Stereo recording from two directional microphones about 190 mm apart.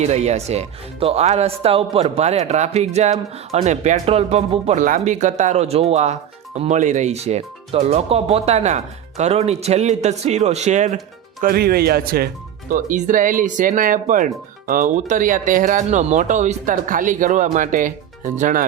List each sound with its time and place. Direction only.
0.0 s speech: 35° right (ahead or behind)